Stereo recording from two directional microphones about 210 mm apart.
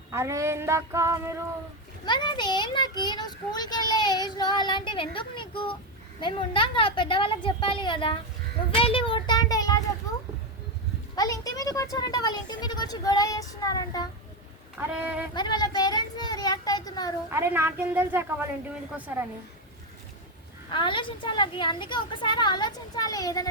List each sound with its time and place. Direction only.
0.1 s a woman's voice: 15° right (ahead or behind)
2.0 s a child's voice: 20° left (ahead or behind)
8.7 s a sound: 25° left (ahead or behind)
11.1 s speech: 15° left (ahead or behind)
14.8 s a woman's voice: 10° right (ahead or behind)
15.4 s a child's voice: 20° left (ahead or behind)
17.2 s a woman's voice: 10° right (ahead or behind)
20.7 s a child's voice: 25° left (ahead or behind)